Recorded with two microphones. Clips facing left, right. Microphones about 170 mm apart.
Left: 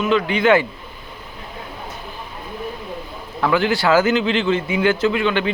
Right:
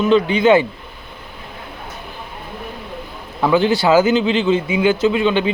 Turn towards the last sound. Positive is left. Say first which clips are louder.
# right 3 dB
turn(degrees=-20)  # may be behind; listen again after turning